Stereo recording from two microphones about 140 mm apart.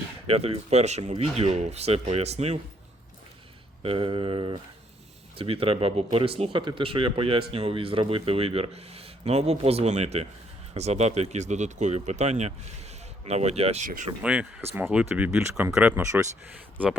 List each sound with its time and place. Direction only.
0.3 s speech: 45° right (ahead or behind)
3.8 s speech: 40° right (ahead or behind)
13.8 s speech: 70° right (ahead or behind)
14.2 s speech: 10° right (ahead or behind)